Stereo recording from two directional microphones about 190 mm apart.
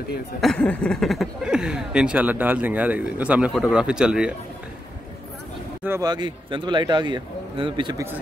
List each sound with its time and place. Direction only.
0.4 s speech: 5° left (ahead or behind)
5.9 s speech: 20° right (ahead or behind)